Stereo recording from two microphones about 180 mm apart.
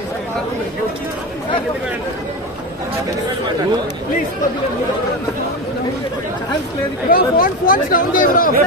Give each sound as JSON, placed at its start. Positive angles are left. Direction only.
{"t": 7.1, "sound": "speech", "side_deg": 55}